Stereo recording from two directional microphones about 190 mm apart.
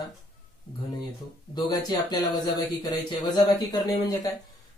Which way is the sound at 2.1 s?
20° left (ahead or behind).